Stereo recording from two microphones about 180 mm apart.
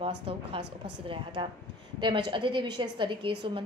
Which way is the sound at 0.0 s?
30° right (ahead or behind).